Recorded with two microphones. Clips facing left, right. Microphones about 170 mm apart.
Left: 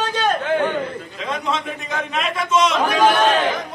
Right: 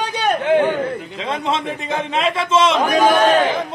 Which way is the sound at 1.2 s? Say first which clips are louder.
Right 1 dB; 30° right (ahead or behind).